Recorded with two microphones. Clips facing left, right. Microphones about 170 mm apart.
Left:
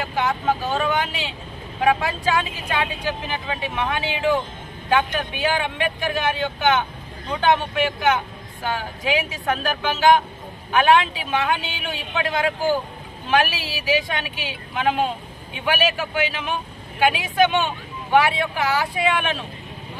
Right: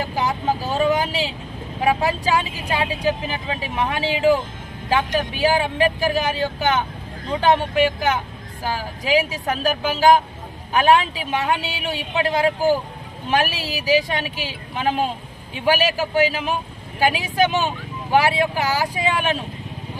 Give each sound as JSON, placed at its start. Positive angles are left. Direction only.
{"t": 0.0, "sound": "vehicle", "side_deg": -35}
{"t": 2.0, "sound": "speech", "side_deg": -35}